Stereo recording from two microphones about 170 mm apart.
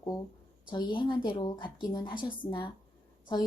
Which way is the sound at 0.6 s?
25° left (ahead or behind).